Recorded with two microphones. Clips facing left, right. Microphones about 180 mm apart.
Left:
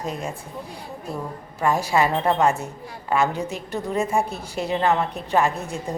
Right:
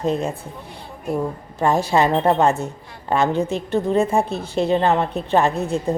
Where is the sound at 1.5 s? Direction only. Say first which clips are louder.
Right 3 dB; 25° right (ahead or behind).